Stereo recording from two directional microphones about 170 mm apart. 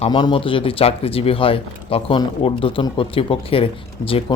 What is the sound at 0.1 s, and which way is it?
Speech, 25° left (ahead or behind).